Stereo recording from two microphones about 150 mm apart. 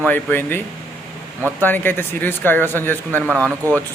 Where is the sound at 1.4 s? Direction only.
15° right (ahead or behind).